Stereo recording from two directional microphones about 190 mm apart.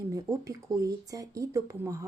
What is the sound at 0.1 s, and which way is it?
A woman's voice, 15° right (ahead or behind).